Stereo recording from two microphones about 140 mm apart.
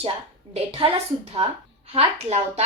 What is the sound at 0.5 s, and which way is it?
A woman's voice, 45° right (ahead or behind).